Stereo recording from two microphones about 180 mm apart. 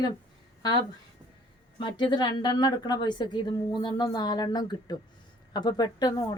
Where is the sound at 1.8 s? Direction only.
25° left (ahead or behind).